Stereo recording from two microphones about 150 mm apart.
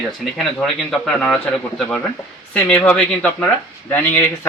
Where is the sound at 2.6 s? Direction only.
5° left (ahead or behind).